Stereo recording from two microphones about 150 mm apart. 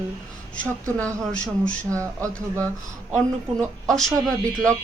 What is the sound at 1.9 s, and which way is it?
Speech, 20° right (ahead or behind).